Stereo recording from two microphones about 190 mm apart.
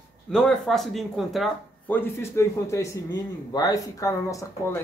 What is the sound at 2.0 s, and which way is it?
A man's voice, 15° left (ahead or behind).